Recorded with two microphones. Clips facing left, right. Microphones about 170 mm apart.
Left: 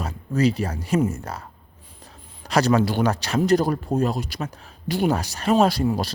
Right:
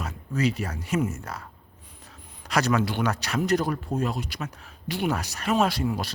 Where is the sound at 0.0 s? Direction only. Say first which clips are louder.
Left 5 dB; 35° left (ahead or behind).